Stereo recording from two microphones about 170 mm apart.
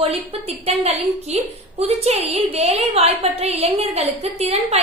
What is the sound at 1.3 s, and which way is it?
A woman's voice, 35° right (ahead or behind).